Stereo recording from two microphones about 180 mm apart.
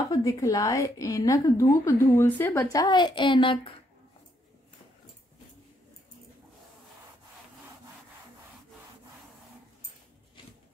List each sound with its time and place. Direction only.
0.1 s a woman's voice: 20° left (ahead or behind)